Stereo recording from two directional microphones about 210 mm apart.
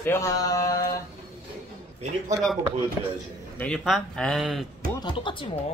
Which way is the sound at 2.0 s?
30° right (ahead or behind).